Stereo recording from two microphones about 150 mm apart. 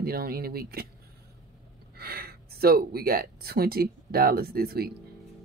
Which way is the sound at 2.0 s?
90° right.